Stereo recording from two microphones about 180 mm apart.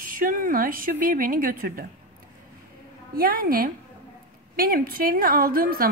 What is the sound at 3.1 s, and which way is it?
A woman's voice, 55° right (ahead or behind).